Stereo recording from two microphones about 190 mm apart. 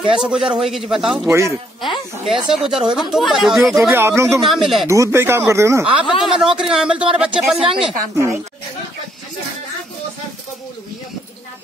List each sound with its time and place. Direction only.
0.1 s speech: 5° right (ahead or behind)
3.9 s speech: 15° right (ahead or behind)
4.4 s speech: centre (ahead or behind)
4.8 s speech: 15° right (ahead or behind)
8.1 s speech: 15° right (ahead or behind)